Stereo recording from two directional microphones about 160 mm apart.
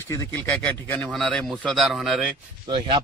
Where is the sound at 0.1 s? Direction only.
15° left (ahead or behind); by 2.2 s centre (ahead or behind).